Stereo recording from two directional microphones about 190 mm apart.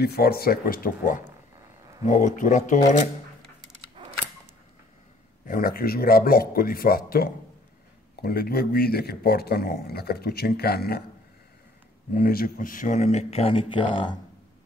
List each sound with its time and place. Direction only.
0.0 s speech: 55° left (ahead or behind); by 3.1 s 40° left (ahead or behind)
5.5 s speech: 50° left (ahead or behind)
12.1 s speech: 50° left (ahead or behind); by 14.1 s 25° left (ahead or behind)